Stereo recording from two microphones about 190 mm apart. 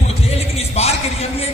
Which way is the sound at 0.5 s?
35° left (ahead or behind).